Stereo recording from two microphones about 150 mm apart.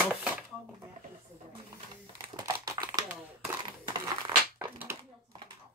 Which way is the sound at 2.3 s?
25° right (ahead or behind).